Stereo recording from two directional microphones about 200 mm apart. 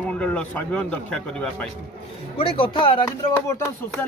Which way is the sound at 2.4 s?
25° left (ahead or behind).